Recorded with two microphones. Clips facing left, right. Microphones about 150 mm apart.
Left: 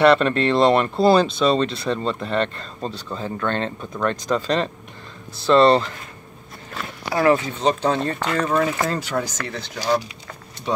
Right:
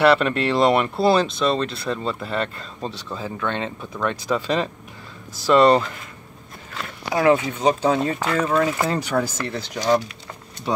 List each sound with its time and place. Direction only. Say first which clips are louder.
0.0 s speech: left 2 dB; 10° right (ahead or behind)
7.2 s speech: even; 15° right (ahead or behind)